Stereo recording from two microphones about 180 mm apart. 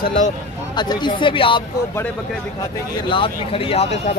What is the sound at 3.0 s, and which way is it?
Speech, 30° left (ahead or behind).